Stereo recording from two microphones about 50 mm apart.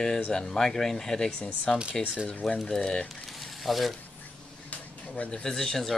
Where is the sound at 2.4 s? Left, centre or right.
Centre.